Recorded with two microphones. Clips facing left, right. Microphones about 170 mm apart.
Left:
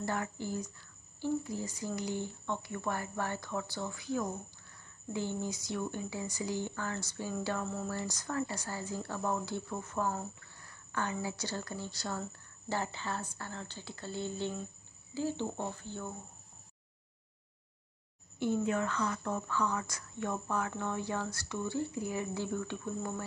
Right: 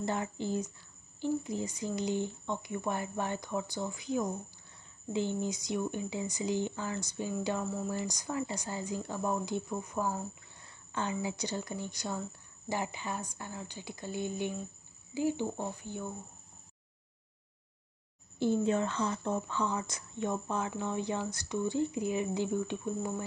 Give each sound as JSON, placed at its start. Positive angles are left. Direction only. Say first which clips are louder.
{"t": 0.0, "sound": "speech", "louder": "right 2 dB", "side_deg": -20}
{"t": 10.6, "sound": "speech", "louder": "right 1 dB", "side_deg": -20}
{"t": 18.4, "sound": "speech", "louder": "right 3 dB", "side_deg": -30}